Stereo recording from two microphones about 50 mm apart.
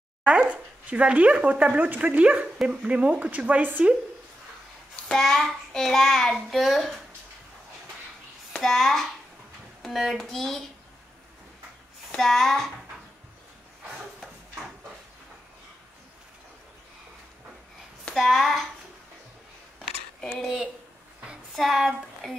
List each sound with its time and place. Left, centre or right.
0.2 s speech: right
2.4 s speech: centre; by 3.8 s right
5.1 s a child's voice: centre
8.5 s a child's voice: centre
10.1 s a child's voice: centre
12.2 s a child's voice: centre
18.1 s a child's voice: centre
20.3 s a child's voice: centre